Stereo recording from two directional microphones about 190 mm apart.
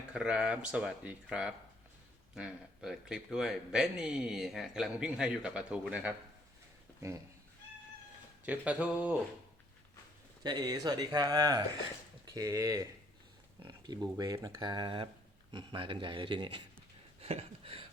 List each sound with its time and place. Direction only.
0.1 s a man's voice: 5° right (ahead or behind)
8.4 s speech: 5° right (ahead or behind)
10.4 s speech: 20° right (ahead or behind)
17.2 s a sound: 30° right (ahead or behind)